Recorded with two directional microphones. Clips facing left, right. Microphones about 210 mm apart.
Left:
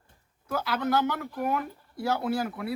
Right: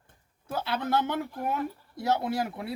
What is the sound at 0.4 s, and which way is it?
Speech, 30° right (ahead or behind).